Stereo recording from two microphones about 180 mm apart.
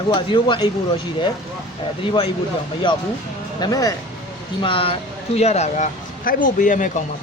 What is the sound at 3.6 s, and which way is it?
Speech, 20° left (ahead or behind).